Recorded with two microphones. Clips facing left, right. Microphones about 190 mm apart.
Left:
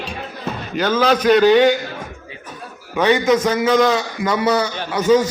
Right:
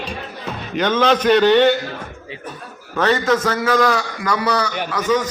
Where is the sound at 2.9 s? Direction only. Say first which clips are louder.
Left 2 dB; 15° left (ahead or behind).